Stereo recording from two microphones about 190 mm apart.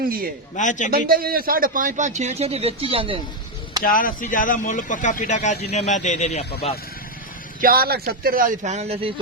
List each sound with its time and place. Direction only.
0.5 s speech: 40° left (ahead or behind)
0.9 s a man's voice: 50° right (ahead or behind); by 3.2 s 30° right (ahead or behind)
3.8 s speech: 45° left (ahead or behind)
7.6 s a man's voice: 50° right (ahead or behind); by 9.1 s 30° right (ahead or behind)